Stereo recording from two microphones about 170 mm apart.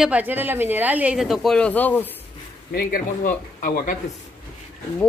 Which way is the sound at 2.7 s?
55° left (ahead or behind).